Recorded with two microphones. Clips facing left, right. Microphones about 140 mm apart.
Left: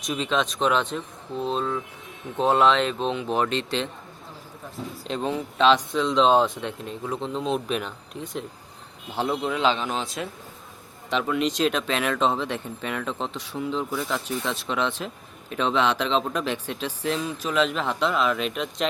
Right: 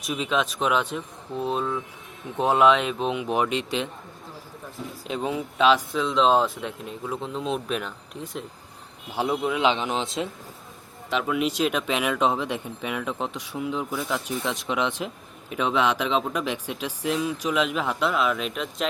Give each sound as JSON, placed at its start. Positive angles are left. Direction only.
{"t": 0.0, "sound": "speech", "side_deg": -5}
{"t": 5.0, "sound": "speech", "side_deg": -5}
{"t": 11.1, "sound": "speech", "side_deg": -5}